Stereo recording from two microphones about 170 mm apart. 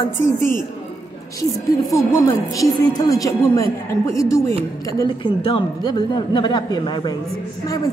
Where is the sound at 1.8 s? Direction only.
20° left (ahead or behind).